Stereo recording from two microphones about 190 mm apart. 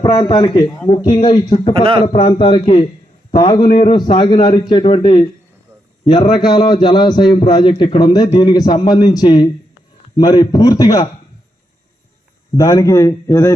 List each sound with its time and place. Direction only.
0.0 s a man's voice: 25° left (ahead or behind)
1.7 s a man's voice: 25° right (ahead or behind)
2.1 s a man's voice: 25° left (ahead or behind)
12.5 s a man's voice: 15° left (ahead or behind)